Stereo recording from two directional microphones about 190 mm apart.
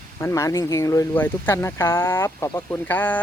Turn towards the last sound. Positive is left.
turn(degrees=10)  # may be behind; listen again after turning